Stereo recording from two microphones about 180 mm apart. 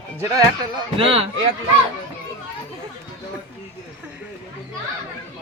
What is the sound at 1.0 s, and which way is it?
Speech, 30° right (ahead or behind).